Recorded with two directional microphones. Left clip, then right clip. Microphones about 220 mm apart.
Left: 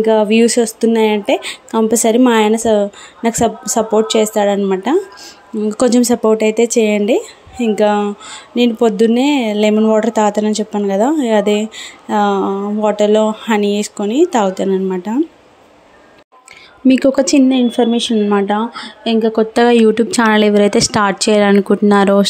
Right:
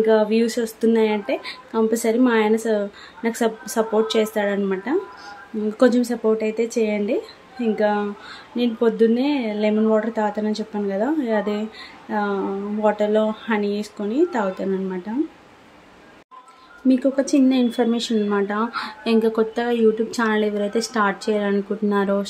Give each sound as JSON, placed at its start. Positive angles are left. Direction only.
{"t": 0.0, "sound": "speech", "side_deg": 25}
{"t": 16.8, "sound": "speech", "side_deg": 35}
{"t": 17.5, "sound": "speech", "side_deg": 25}
{"t": 19.5, "sound": "speech", "side_deg": 40}